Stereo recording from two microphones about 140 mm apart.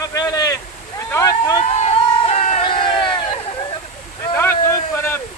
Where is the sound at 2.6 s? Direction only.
40° left (ahead or behind).